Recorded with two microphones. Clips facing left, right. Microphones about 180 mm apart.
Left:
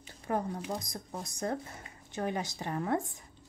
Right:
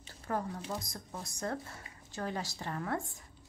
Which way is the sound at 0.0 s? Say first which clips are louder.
Left 3 dB; 20° left (ahead or behind).